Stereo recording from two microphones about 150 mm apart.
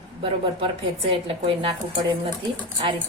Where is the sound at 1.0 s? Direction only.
40° right (ahead or behind).